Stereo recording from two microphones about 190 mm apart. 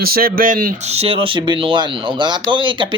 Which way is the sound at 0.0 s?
50° right (ahead or behind).